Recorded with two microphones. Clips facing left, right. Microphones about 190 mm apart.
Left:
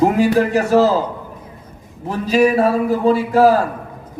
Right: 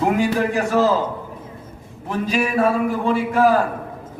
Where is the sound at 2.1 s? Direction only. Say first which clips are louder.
Left 7 dB; 35° left (ahead or behind).